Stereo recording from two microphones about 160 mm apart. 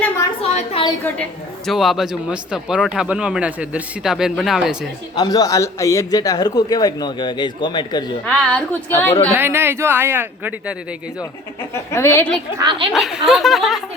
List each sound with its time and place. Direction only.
0.4 s a sound: 40° left (ahead or behind)
1.0 s a woman's voice: 10° left (ahead or behind)
1.7 s speech: centre (ahead or behind)
5.1 s a man's voice: 25° left (ahead or behind)
8.3 s a woman's voice: 5° left (ahead or behind)
9.3 s speech: 15° right (ahead or behind)
11.7 s a woman's voice: 15° left (ahead or behind)
12.5 s speech: 30° right (ahead or behind)
12.9 s speech: centre (ahead or behind)